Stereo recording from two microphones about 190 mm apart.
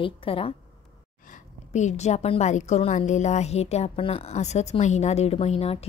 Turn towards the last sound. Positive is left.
turn(degrees=30)  # may be behind; listen again after turning